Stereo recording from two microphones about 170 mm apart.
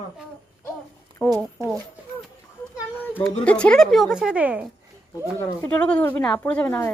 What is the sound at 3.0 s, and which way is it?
Speech, 10° left (ahead or behind).